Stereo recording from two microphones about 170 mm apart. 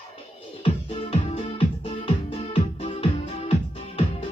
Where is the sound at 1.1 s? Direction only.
35° left (ahead or behind).